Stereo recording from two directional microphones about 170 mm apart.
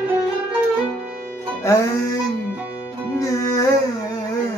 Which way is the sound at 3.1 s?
20° left (ahead or behind).